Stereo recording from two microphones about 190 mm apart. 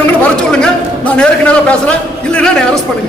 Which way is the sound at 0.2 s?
5° left (ahead or behind).